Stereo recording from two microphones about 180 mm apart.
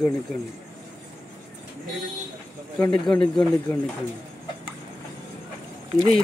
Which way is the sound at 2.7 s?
5° left (ahead or behind).